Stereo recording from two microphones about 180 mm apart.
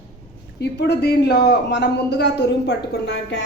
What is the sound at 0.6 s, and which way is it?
Speech, 65° left (ahead or behind).